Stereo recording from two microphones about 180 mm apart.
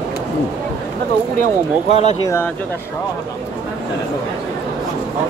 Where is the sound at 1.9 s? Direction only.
35° left (ahead or behind).